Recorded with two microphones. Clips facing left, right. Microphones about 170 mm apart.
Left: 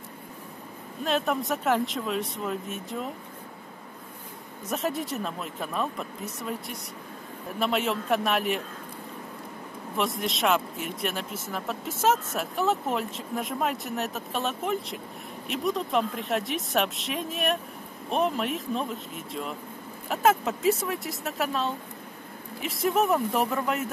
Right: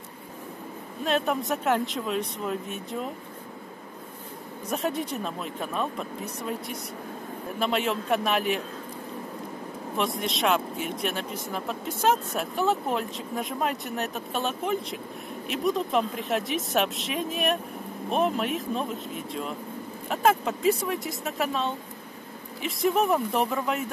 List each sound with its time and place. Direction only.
1.0 s speech: centre (ahead or behind)
4.6 s speech: centre (ahead or behind)
9.9 s speech: centre (ahead or behind)